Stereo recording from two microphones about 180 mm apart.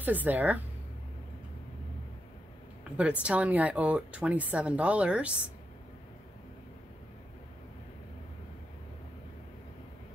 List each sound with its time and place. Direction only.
0.0 s speech: 10° right (ahead or behind)
3.0 s speech: 5° right (ahead or behind)